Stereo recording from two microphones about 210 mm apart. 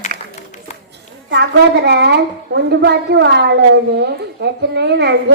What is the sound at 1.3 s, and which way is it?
A child's voice, 55° right (ahead or behind).